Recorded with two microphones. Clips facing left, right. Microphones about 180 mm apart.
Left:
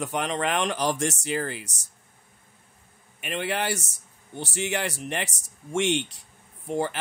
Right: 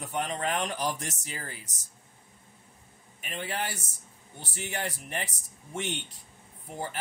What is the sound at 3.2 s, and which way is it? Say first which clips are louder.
A man's voice: left 6 dB; 80° left.